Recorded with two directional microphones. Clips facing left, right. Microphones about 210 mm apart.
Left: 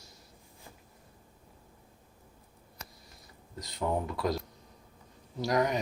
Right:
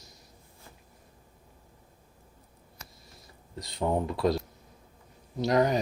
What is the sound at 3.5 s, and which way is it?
Speech, 25° right (ahead or behind).